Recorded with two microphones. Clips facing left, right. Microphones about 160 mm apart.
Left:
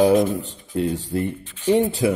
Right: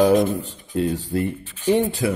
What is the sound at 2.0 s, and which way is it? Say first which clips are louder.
Speech: left 3 dB; 20° left (ahead or behind).